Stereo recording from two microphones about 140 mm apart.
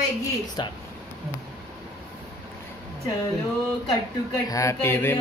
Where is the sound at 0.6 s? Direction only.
30° left (ahead or behind).